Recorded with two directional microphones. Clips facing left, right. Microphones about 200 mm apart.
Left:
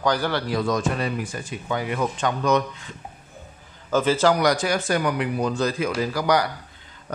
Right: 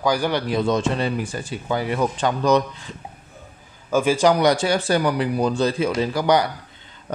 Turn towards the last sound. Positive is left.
turn(degrees=-25)  # may be behind; listen again after turning